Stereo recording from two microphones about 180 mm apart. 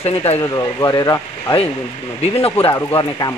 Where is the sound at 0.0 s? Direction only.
35° left (ahead or behind).